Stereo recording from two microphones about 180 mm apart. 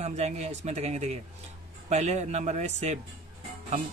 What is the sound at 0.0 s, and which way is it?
Speech, 35° right (ahead or behind).